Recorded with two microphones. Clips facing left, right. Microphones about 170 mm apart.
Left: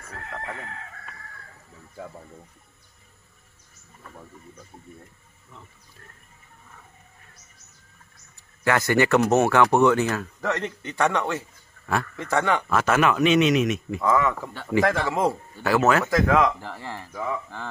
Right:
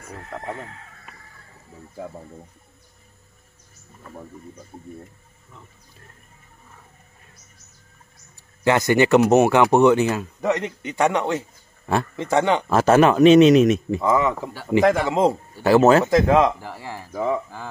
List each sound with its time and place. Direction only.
8.6 s speech: 20° right (ahead or behind)
12.6 s speech: 30° right (ahead or behind)
16.6 s speech: 10° right (ahead or behind)
17.1 s speech: 35° right (ahead or behind)